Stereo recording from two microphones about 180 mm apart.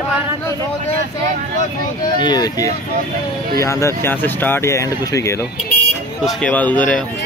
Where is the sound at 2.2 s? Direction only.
20° left (ahead or behind).